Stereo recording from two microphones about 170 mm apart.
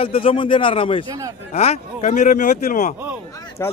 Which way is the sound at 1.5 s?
40° left (ahead or behind).